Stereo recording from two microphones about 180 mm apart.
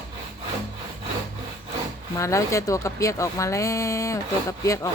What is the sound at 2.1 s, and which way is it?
Speech, 15° left (ahead or behind).